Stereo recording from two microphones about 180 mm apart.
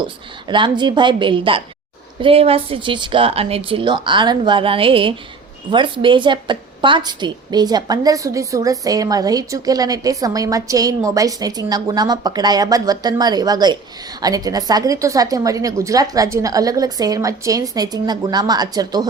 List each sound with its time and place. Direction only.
0.4 s a woman's voice: 25° right (ahead or behind)